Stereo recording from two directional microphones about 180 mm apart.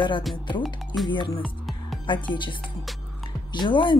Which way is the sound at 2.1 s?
25° left (ahead or behind).